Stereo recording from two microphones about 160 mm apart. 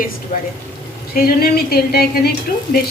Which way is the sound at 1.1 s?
75° left (ahead or behind).